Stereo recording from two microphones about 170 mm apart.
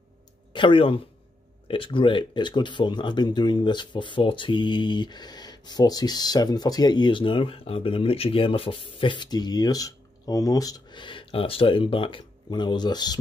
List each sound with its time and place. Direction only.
0.5 s speech: 30° left (ahead or behind)